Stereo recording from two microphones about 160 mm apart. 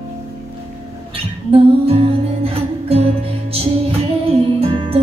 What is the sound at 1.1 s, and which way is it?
Music, 35° right (ahead or behind).